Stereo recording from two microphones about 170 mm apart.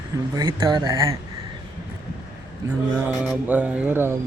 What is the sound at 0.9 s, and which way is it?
Speech, 15° right (ahead or behind).